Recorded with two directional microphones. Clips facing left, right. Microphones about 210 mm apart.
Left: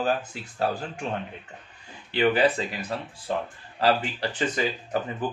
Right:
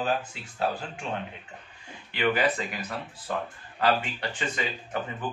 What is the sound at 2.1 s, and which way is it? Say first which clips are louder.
A man's voice: left 4 dB; 30° left (ahead or behind).